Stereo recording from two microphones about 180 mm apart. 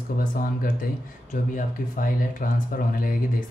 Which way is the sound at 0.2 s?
50° left (ahead or behind).